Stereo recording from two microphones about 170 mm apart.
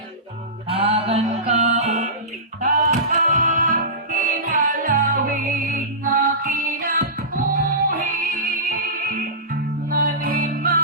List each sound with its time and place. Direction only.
0.7 s music: 35° right (ahead or behind); by 8.3 s 55° right (ahead or behind)
9.9 s music: 60° right (ahead or behind)